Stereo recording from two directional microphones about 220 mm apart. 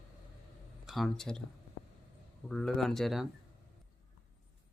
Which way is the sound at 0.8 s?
Centre (ahead or behind).